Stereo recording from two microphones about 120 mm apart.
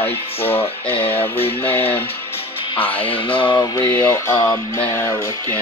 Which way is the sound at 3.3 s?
40° left (ahead or behind).